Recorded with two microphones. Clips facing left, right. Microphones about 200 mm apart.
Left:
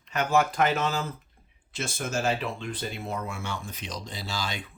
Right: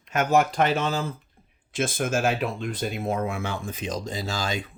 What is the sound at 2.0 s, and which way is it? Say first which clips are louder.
Speech: right 3 dB; 50° right (ahead or behind).